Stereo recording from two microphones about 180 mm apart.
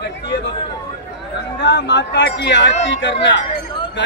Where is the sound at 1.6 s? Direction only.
75° left (ahead or behind).